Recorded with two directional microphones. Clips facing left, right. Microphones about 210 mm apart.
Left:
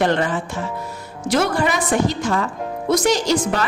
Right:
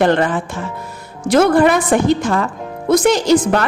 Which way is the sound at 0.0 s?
55° right (ahead or behind).